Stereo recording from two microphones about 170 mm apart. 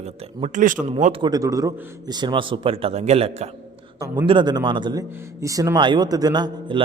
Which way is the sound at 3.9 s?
20° right (ahead or behind).